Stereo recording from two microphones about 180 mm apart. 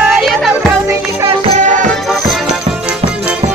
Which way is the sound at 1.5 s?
45° right (ahead or behind).